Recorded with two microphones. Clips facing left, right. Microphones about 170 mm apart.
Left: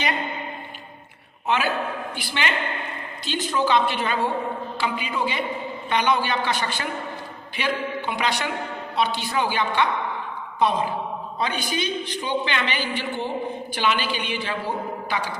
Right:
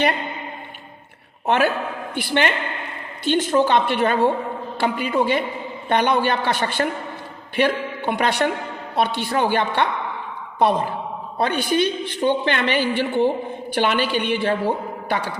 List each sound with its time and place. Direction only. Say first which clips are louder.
1.5 s a woman's voice: right 4 dB; 55° right (ahead or behind)